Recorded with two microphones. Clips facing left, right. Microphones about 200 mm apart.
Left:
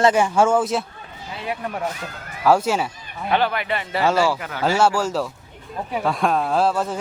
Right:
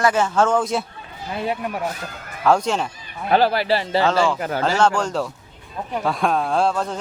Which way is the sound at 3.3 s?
35° right (ahead or behind).